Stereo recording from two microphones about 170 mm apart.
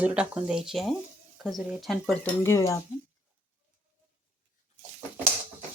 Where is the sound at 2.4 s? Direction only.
15° left (ahead or behind).